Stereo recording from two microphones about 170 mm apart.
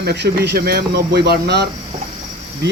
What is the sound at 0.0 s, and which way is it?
Speech, 80° right.